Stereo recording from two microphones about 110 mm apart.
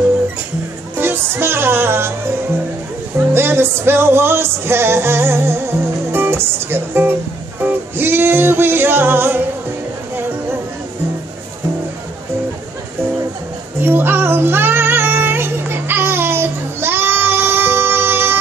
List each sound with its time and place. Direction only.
0.9 s music: 20° right (ahead or behind)
3.3 s music: 20° right (ahead or behind)
13.7 s child singing: 20° right (ahead or behind)